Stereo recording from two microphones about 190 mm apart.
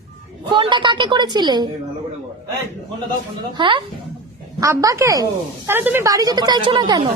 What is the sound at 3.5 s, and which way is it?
A woman's voice, 25° right (ahead or behind).